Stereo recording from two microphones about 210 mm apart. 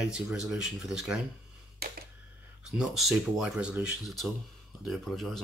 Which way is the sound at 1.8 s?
45° right (ahead or behind).